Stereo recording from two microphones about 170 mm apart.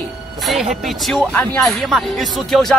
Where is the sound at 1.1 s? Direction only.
5° left (ahead or behind).